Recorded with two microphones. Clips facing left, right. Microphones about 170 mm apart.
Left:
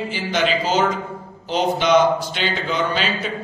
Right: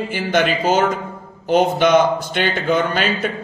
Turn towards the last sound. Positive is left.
turn(degrees=-55)  # may be behind; listen again after turning